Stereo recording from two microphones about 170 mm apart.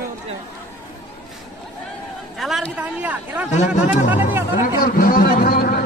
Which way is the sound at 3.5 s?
45° left (ahead or behind).